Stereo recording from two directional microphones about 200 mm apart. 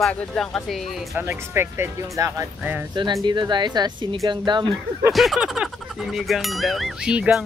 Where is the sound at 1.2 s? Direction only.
10° right (ahead or behind).